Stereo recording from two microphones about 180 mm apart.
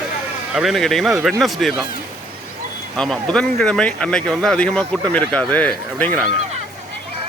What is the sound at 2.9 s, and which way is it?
Speech, 5° left (ahead or behind).